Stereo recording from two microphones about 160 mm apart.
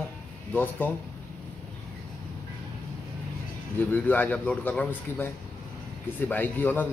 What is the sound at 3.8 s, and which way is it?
A man's voice, 10° left (ahead or behind).